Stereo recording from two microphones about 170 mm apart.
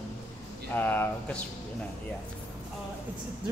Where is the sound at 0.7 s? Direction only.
10° left (ahead or behind).